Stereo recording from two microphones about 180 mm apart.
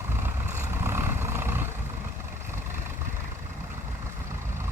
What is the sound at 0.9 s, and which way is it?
Roaring cats, 15° right (ahead or behind).